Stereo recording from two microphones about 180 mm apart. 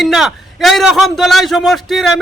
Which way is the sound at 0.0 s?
Centre (ahead or behind).